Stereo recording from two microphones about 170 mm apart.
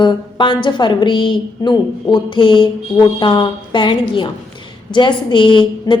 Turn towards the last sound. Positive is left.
turn(degrees=30)  # may be behind; listen again after turning